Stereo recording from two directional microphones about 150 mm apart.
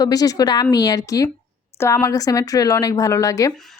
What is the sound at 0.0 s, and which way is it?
A woman's voice, 25° left (ahead or behind).